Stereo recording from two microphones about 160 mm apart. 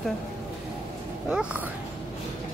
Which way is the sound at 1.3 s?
10° right (ahead or behind).